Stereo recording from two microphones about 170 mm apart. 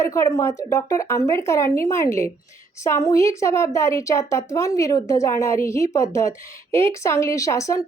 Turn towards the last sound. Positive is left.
turn(degrees=20)  # may be behind; listen again after turning